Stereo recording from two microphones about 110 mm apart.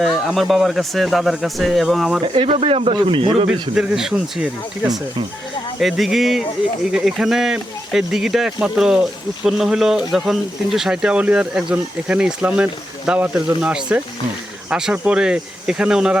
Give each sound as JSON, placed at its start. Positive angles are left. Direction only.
{"t": 0.3, "sound": "speech", "side_deg": 0}
{"t": 2.2, "sound": "speech", "side_deg": -50}
{"t": 3.5, "sound": "speech", "side_deg": -5}